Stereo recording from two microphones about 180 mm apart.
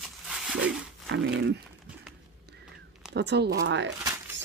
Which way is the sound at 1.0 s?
65° right (ahead or behind).